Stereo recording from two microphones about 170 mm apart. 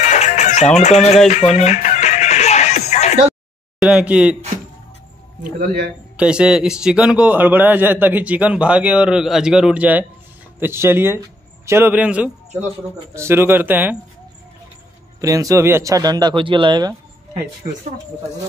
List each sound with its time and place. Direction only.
0.0 s music: 40° left (ahead or behind)
3.8 s a man's voice: 5° right (ahead or behind)
5.4 s speech: 65° right (ahead or behind)
6.1 s a man's voice: 5° right (ahead or behind)
15.1 s a man's voice: 20° right (ahead or behind)